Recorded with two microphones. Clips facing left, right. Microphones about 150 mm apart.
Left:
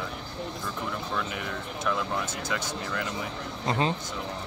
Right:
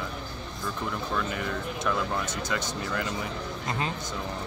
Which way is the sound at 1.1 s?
5° left (ahead or behind).